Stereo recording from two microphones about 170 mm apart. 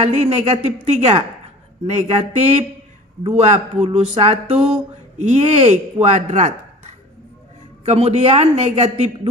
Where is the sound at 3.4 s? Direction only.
40° right (ahead or behind).